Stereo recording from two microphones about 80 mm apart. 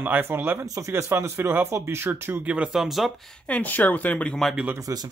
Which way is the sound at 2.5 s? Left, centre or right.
Centre.